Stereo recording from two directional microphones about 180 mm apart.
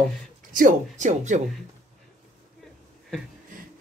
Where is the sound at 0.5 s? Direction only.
45° right (ahead or behind).